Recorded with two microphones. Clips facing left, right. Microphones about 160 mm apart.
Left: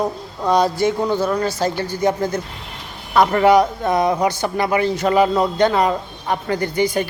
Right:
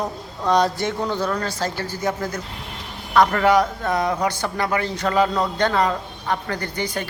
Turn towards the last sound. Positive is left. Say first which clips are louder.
# left 8 dB
turn(degrees=10)  # may be behind; listen again after turning